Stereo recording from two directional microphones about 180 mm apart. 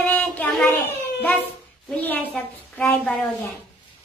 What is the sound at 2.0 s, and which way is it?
Speech, 10° left (ahead or behind).